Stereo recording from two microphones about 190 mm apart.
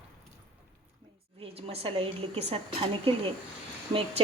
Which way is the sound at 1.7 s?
30° right (ahead or behind).